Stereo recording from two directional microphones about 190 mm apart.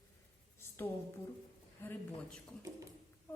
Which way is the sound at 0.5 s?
15° left (ahead or behind).